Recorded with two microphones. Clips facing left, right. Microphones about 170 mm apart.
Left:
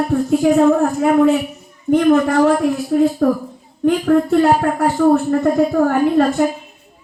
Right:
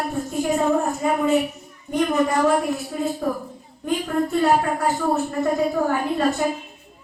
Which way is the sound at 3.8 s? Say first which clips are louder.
Left 9 dB; 65° left (ahead or behind).